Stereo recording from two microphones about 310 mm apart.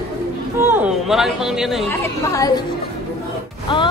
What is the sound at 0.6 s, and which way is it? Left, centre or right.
Speech, centre.